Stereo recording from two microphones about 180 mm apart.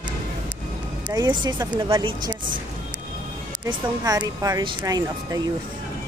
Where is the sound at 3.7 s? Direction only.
20° right (ahead or behind).